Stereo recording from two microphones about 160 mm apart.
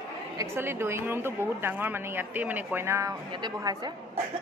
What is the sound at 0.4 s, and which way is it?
A woman's voice, 15° right (ahead or behind).